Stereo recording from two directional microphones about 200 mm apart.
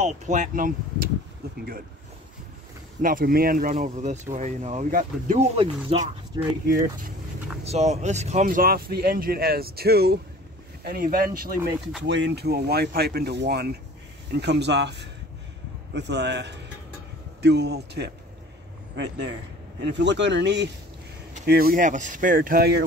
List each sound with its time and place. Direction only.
0.0 s speech: 40° right (ahead or behind)
1.4 s vehicle: 50° right (ahead or behind)
3.0 s a man's voice: 45° right (ahead or behind); by 6.4 s 30° right (ahead or behind)
6.7 s a man's voice: 45° right (ahead or behind)
7.6 s a man's voice: 30° right (ahead or behind)
12.0 s a man's voice: 60° right (ahead or behind)
21.3 s a man's voice: 50° right (ahead or behind)